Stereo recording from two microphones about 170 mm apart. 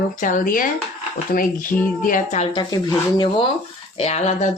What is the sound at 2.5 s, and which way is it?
Speech, 25° left (ahead or behind).